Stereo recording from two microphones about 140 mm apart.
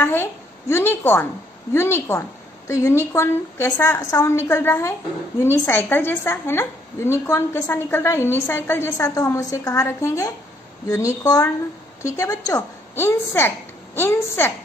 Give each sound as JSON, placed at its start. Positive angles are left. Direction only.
{"t": 0.0, "sound": "a woman's voice", "side_deg": 15}